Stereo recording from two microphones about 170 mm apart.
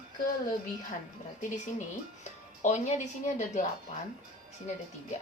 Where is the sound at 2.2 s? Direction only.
45° left (ahead or behind).